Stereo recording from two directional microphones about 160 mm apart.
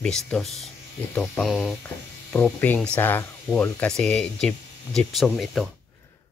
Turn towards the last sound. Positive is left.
turn(degrees=0)  # may be behind; listen again after turning